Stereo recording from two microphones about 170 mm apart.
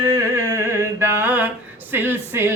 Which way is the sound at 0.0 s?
20° right (ahead or behind).